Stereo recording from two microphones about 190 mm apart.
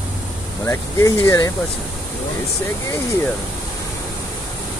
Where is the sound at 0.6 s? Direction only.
15° left (ahead or behind).